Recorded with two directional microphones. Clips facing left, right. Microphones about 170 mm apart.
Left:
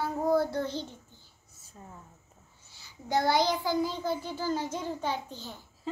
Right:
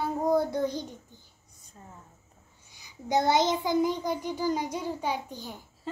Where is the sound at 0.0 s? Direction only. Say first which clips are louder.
Right 1 dB; 20° right (ahead or behind).